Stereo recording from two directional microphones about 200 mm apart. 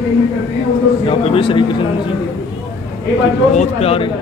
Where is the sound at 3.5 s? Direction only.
30° left (ahead or behind).